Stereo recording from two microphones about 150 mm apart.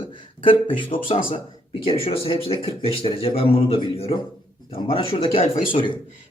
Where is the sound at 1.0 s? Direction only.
40° left (ahead or behind).